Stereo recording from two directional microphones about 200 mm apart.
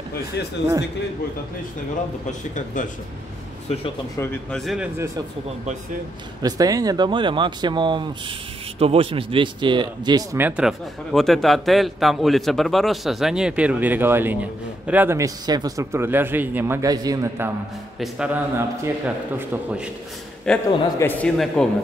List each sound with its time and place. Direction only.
2.5 s speech: 40° left (ahead or behind)
4.2 s speech: 5° left (ahead or behind); by 5.2 s 15° right (ahead or behind)
6.4 s speech: 20° right (ahead or behind)
17.9 s a man's voice: centre (ahead or behind)